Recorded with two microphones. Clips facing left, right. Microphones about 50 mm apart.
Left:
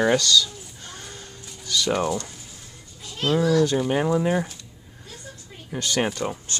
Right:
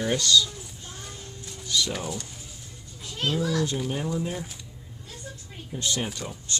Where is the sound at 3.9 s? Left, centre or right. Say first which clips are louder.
Left 8 dB; left.